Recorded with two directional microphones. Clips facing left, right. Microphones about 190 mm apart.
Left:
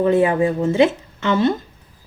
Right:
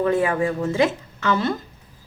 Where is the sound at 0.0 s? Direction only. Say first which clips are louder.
Left 4 dB; 20° left (ahead or behind).